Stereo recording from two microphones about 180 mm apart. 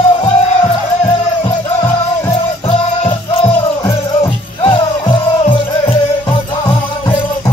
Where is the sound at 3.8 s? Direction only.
20° left (ahead or behind).